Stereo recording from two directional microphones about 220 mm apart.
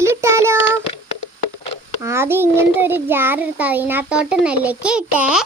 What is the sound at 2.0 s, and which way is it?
A child's voice, 10° right (ahead or behind).